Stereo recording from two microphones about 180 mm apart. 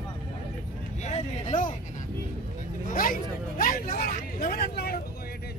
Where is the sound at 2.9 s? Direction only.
50° left (ahead or behind).